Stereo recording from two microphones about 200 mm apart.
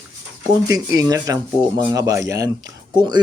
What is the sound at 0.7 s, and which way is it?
A man's voice, 15° right (ahead or behind).